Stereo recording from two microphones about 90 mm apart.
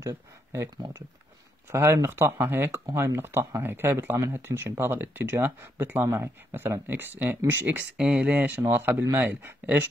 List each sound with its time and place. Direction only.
0.0 s speech: 30° right (ahead or behind)
1.7 s speech: 30° right (ahead or behind)